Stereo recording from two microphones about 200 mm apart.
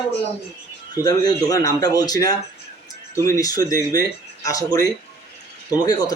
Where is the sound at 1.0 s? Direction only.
20° left (ahead or behind).